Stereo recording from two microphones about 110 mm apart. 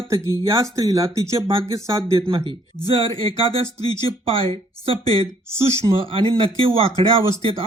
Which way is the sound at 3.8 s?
55° right (ahead or behind).